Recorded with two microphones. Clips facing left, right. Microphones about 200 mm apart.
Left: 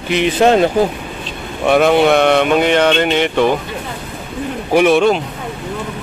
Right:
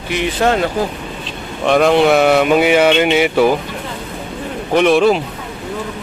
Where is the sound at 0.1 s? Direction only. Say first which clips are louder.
Left 4 dB; 20° left (ahead or behind).